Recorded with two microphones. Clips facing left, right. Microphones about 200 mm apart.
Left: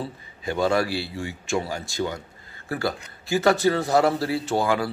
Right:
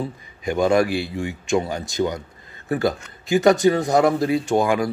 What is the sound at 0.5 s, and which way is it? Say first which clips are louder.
A man's voice: right 4 dB; 15° right (ahead or behind).